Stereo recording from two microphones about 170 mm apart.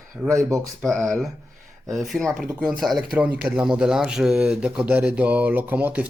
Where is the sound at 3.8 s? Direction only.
5° right (ahead or behind).